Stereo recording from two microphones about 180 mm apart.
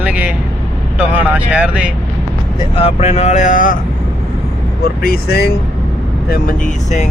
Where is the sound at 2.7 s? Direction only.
35° left (ahead or behind).